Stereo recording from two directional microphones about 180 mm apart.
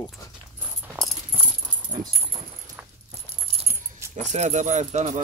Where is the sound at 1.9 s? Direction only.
20° right (ahead or behind).